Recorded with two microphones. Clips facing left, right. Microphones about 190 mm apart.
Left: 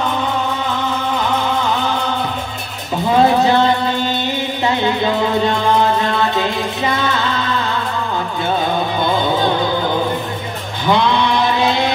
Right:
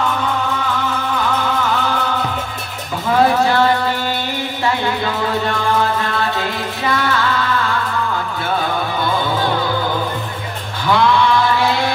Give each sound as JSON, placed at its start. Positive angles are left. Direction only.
{"t": 3.1, "sound": "cowbell", "side_deg": 20}
{"t": 4.6, "sound": "music", "side_deg": 20}
{"t": 9.0, "sound": "music", "side_deg": 20}
{"t": 10.9, "sound": "mantra", "side_deg": 20}